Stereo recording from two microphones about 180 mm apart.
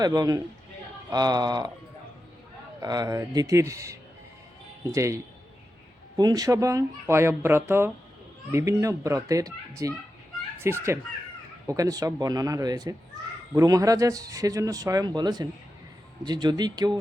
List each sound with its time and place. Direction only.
0.0 s speech: 20° right (ahead or behind)
2.8 s speech: 20° right (ahead or behind)